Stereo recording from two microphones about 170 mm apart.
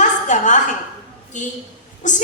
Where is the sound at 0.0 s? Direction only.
45° left (ahead or behind).